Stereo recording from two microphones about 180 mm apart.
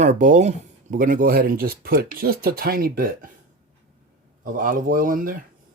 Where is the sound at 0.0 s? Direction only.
45° right (ahead or behind).